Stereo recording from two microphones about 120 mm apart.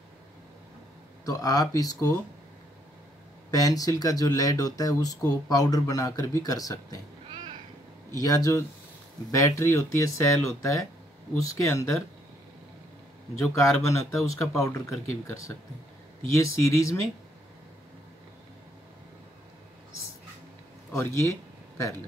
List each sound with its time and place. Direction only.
1.2 s speech: 30° left (ahead or behind)
3.5 s speech: 30° left (ahead or behind)
7.2 s cat: 40° right (ahead or behind)
8.1 s speech: 30° left (ahead or behind)
13.4 s speech: 25° left (ahead or behind)
20.9 s a sound: 25° left (ahead or behind)